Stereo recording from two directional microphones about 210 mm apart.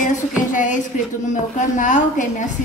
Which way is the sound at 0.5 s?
40° left (ahead or behind).